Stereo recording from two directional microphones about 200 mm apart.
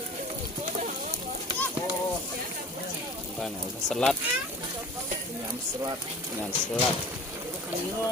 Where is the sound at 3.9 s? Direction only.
Centre (ahead or behind).